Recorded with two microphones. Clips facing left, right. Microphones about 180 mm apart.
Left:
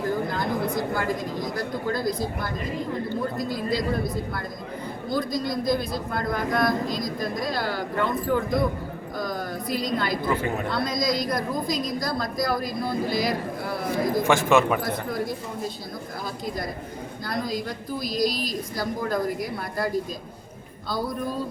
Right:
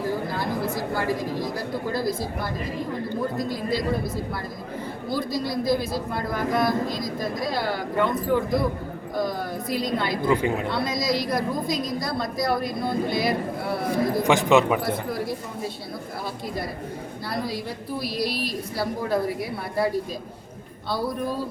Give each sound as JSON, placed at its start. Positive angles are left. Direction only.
{"t": 0.7, "sound": "a man's voice", "side_deg": -5}
{"t": 3.3, "sound": "a man's voice", "side_deg": 0}
{"t": 9.6, "sound": "a man's voice", "side_deg": 0}
{"t": 10.2, "sound": "a man's voice", "side_deg": -15}
{"t": 14.3, "sound": "speech", "side_deg": -15}
{"t": 15.1, "sound": "a man's voice", "side_deg": -5}
{"t": 17.2, "sound": "a man's voice", "side_deg": -5}